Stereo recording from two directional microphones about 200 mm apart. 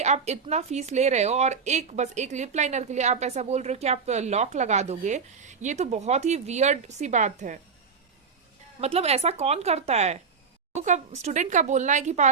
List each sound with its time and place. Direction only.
0.0 s speech: 35° right (ahead or behind)
8.8 s speech: 30° right (ahead or behind)